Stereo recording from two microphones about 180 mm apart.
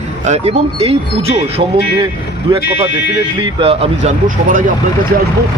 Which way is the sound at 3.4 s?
25° right (ahead or behind).